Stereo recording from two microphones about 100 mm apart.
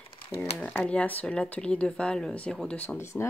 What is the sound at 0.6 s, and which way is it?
Speech, 10° left (ahead or behind).